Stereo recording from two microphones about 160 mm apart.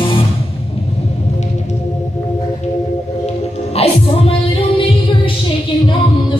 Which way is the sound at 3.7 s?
40° left (ahead or behind).